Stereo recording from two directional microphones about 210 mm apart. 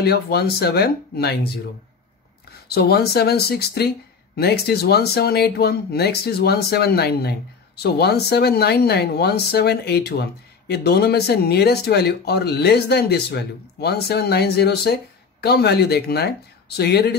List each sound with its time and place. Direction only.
0.0 s speech: 50° left (ahead or behind)
2.7 s speech: 50° left (ahead or behind)